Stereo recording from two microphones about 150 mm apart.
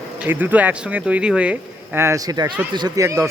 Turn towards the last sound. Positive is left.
turn(degrees=-20)  # may be behind; listen again after turning